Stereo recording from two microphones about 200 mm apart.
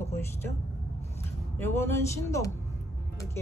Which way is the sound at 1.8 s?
15° left (ahead or behind).